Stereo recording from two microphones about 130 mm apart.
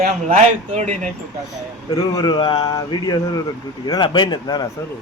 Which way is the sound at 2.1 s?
35° left (ahead or behind).